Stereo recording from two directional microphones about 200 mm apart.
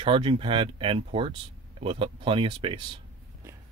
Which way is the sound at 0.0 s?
25° right (ahead or behind).